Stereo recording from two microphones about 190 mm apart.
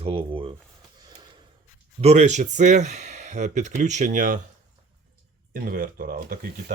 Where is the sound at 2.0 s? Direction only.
40° right (ahead or behind).